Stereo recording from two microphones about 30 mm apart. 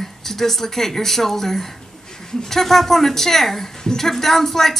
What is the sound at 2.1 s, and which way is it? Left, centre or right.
A woman's voice, left.